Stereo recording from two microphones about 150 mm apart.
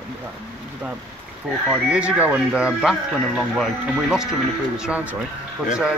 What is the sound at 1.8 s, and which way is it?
A man's voice, 5° right (ahead or behind).